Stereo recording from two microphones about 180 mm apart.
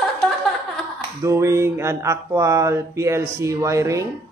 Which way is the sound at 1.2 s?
15° right (ahead or behind).